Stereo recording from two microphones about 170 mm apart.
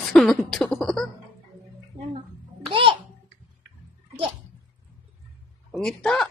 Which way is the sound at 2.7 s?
30° right (ahead or behind).